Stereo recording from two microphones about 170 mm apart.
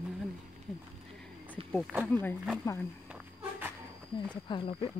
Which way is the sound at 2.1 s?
10° left (ahead or behind).